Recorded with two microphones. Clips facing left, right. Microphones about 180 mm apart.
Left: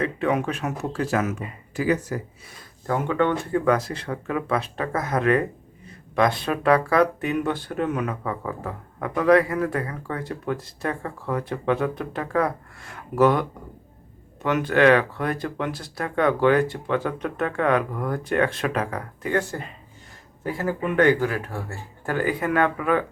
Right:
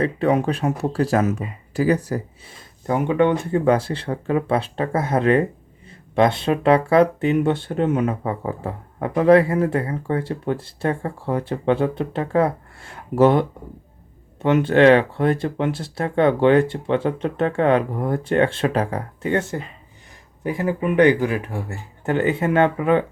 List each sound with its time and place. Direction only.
0.0 s speech: 35° right (ahead or behind)
2.8 s speech: 15° right (ahead or behind)